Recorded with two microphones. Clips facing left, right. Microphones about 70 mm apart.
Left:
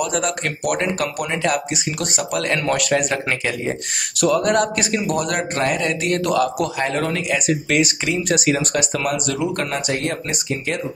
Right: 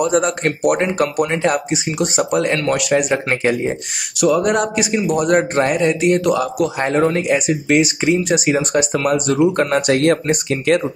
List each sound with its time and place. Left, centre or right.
0.0 s speech: right
4.4 s speech: centre
6.8 s speech: right
9.8 s speech: right